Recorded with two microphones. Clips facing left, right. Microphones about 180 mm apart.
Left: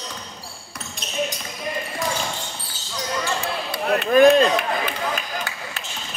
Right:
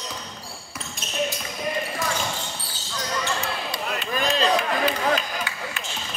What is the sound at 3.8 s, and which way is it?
Chop, 55° left (ahead or behind).